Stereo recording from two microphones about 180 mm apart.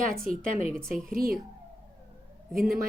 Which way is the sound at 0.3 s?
50° right (ahead or behind).